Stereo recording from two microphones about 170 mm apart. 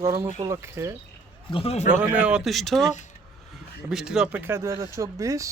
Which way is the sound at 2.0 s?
5° right (ahead or behind).